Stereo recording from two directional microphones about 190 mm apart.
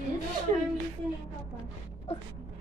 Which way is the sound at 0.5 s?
35° right (ahead or behind).